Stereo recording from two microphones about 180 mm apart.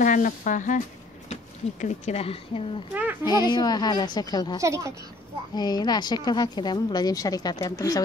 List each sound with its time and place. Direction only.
0.0 s speech: 45° left (ahead or behind); by 2.8 s 30° left (ahead or behind)
2.9 s a sound: 10° right (ahead or behind)
3.4 s speech: 25° left (ahead or behind)
4.6 s a woman's voice: 15° right (ahead or behind)
5.5 s speech: 20° left (ahead or behind)